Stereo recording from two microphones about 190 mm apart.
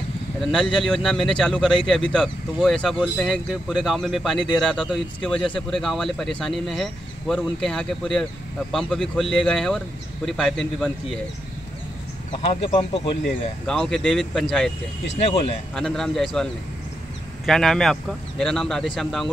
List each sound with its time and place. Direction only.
0.4 s speech: centre (ahead or behind)
12.3 s speech: 30° left (ahead or behind)
13.2 s speech: centre (ahead or behind)
15.1 s speech: 30° left (ahead or behind)
15.7 s speech: 5° left (ahead or behind)
17.5 s speech: centre (ahead or behind)